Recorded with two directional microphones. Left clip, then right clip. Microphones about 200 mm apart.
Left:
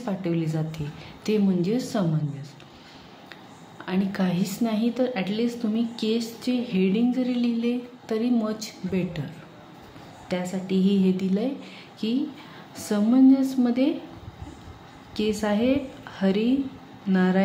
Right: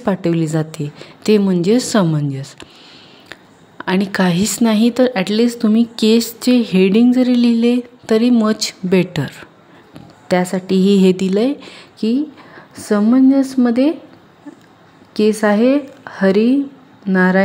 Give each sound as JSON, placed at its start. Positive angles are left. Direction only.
{"t": 0.0, "sound": "a woman's voice", "side_deg": -50}
{"t": 15.1, "sound": "a woman's voice", "side_deg": -45}